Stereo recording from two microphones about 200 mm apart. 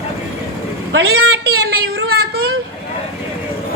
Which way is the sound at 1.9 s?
55° right (ahead or behind).